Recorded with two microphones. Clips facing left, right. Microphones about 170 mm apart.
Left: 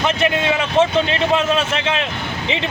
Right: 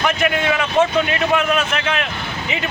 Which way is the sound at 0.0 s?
25° left (ahead or behind).